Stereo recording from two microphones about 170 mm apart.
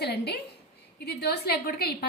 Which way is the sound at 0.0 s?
70° left (ahead or behind).